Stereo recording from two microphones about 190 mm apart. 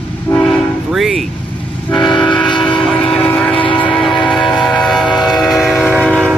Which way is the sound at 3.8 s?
Centre (ahead or behind).